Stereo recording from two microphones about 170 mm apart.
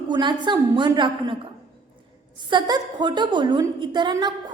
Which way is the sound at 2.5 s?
25° right (ahead or behind).